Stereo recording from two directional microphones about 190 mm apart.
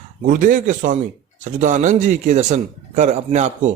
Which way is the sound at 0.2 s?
45° right (ahead or behind).